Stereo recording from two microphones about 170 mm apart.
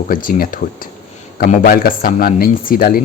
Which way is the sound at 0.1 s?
55° left (ahead or behind).